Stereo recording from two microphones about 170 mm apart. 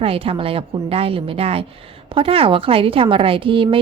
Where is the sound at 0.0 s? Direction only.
35° right (ahead or behind).